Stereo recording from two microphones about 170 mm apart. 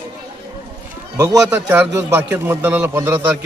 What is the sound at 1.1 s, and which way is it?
A man's voice, 20° right (ahead or behind).